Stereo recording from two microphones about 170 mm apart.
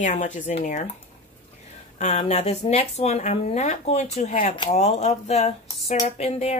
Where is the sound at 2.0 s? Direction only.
40° left (ahead or behind).